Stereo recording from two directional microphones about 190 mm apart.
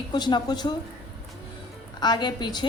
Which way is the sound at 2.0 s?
20° left (ahead or behind).